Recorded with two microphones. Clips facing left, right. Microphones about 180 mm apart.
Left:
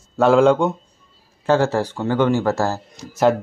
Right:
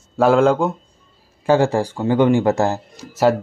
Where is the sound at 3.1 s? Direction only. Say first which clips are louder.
Right 1 dB; 5° right (ahead or behind).